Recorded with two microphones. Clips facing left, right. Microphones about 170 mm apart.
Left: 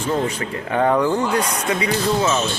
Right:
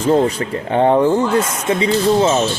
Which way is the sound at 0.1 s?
35° right (ahead or behind).